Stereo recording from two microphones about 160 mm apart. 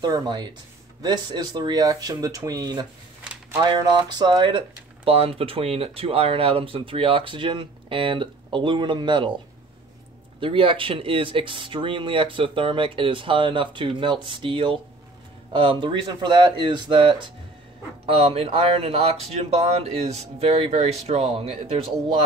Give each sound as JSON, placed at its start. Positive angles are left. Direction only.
{"t": 0.0, "sound": "speech", "side_deg": -25}
{"t": 10.4, "sound": "speech", "side_deg": -35}